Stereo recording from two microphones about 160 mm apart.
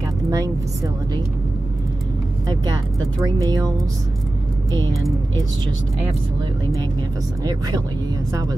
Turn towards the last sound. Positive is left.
turn(degrees=-25)  # may be behind; listen again after turning